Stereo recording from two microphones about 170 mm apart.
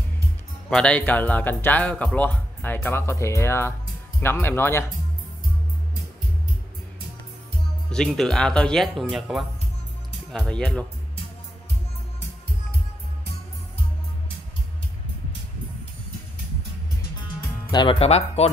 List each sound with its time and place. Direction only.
0.7 s speech: 5° left (ahead or behind)
7.9 s speech: 5° left (ahead or behind)
17.6 s speech: 30° left (ahead or behind)